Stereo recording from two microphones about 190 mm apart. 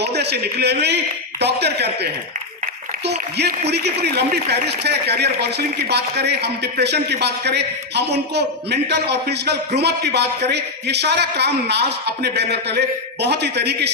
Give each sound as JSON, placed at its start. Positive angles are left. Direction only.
{"t": 0.0, "sound": "a man's voice", "side_deg": -60}
{"t": 3.7, "sound": "speech", "side_deg": -60}